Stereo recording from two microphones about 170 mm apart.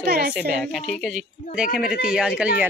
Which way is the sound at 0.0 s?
65° right (ahead or behind).